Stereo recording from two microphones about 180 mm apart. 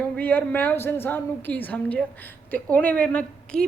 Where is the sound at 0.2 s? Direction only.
10° left (ahead or behind).